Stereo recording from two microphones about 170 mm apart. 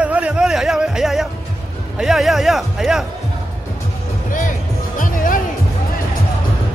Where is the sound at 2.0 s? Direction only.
Centre (ahead or behind).